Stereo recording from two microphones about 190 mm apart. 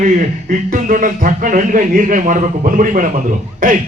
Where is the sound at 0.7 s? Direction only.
45° right (ahead or behind).